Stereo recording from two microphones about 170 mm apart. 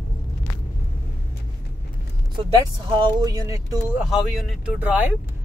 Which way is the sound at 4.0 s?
Centre (ahead or behind).